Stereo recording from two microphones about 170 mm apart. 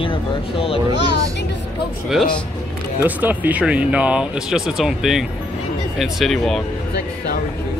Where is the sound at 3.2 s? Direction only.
10° right (ahead or behind).